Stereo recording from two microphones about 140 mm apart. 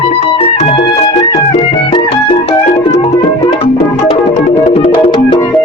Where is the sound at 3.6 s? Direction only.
45° left (ahead or behind).